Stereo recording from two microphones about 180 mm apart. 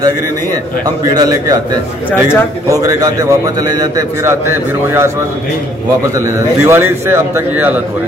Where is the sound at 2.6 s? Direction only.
20° right (ahead or behind).